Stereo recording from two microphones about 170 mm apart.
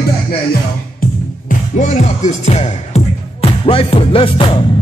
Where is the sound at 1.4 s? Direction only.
45° left (ahead or behind).